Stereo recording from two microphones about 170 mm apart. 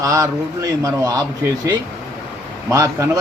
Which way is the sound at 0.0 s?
20° right (ahead or behind).